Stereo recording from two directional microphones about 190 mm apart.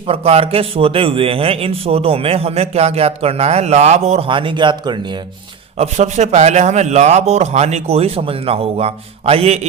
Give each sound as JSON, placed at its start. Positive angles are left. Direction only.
{"t": 0.1, "sound": "a man's voice", "side_deg": -30}
{"t": 5.8, "sound": "a man's voice", "side_deg": -35}